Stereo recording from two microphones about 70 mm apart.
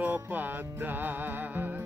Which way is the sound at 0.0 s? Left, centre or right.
Right.